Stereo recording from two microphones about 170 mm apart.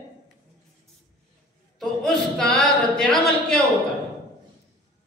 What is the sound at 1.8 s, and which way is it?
Singing, centre (ahead or behind).